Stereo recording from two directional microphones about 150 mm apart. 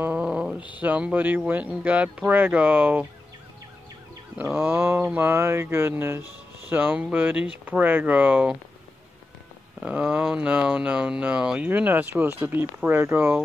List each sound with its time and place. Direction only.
0.0 s speech: 10° right (ahead or behind)
4.4 s speech: 10° right (ahead or behind)
9.8 s speech: 5° right (ahead or behind)